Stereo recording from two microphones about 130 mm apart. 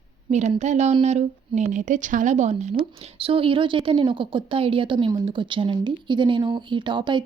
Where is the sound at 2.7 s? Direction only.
45° right (ahead or behind).